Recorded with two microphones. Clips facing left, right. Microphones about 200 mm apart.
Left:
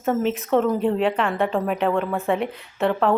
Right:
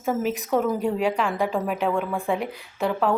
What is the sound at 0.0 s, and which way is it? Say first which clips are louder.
A woman's voice: left 3 dB; 5° right (ahead or behind).